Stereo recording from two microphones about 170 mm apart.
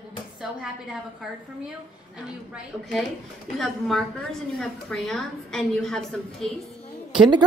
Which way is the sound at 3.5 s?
Centre (ahead or behind).